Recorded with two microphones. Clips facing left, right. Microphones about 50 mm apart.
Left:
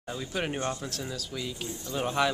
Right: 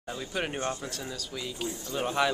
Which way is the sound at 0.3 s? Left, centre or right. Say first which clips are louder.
Even; centre.